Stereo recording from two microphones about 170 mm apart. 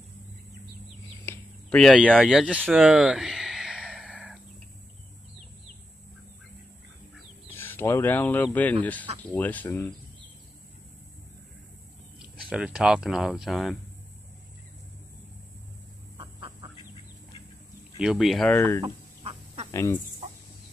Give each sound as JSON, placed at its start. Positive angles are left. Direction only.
{"t": 1.2, "sound": "a sound", "side_deg": 15}
{"t": 1.8, "sound": "speech", "side_deg": 0}
{"t": 2.7, "sound": "a sound", "side_deg": -5}
{"t": 7.5, "sound": "speech", "side_deg": 10}
{"t": 12.4, "sound": "speech", "side_deg": -5}
{"t": 16.2, "sound": "chicken", "side_deg": -30}
{"t": 17.9, "sound": "speech", "side_deg": -5}
{"t": 18.5, "sound": "speech", "side_deg": 10}
{"t": 18.8, "sound": "duck", "side_deg": -35}
{"t": 19.7, "sound": "speech", "side_deg": 15}